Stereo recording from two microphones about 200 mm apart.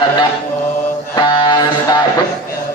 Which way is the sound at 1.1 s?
20° left (ahead or behind).